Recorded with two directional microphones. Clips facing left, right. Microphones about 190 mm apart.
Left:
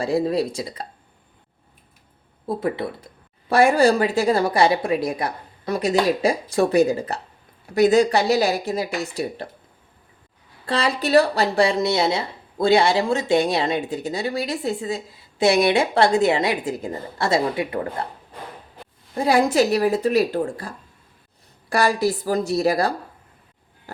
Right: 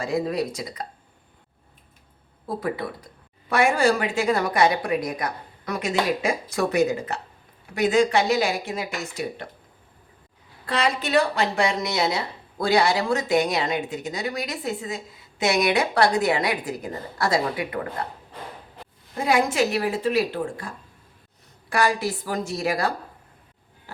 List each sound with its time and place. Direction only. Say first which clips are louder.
0.0 s speech: left 4 dB; 30° left (ahead or behind)
2.5 s a woman's voice: left 3 dB; 25° left (ahead or behind)
10.7 s speech: left 4 dB; 30° left (ahead or behind)
19.1 s a woman's voice: left 4 dB; 35° left (ahead or behind)